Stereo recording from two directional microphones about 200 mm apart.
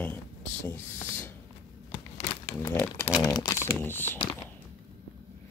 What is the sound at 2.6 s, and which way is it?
Speech, 10° left (ahead or behind).